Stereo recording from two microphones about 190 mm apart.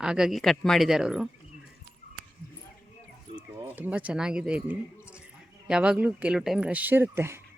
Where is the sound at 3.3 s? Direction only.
10° right (ahead or behind).